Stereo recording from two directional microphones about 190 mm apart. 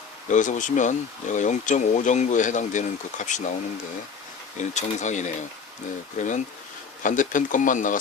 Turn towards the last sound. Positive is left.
turn(degrees=45)  # may be behind; listen again after turning